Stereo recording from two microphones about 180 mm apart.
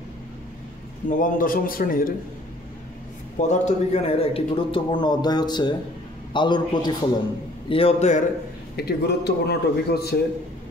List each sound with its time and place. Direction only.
1.0 s a man's voice: 45° left (ahead or behind)
3.3 s a man's voice: 40° left (ahead or behind); by 7.0 s 25° left (ahead or behind)
7.7 s a man's voice: 35° left (ahead or behind)
8.7 s a man's voice: 60° left (ahead or behind)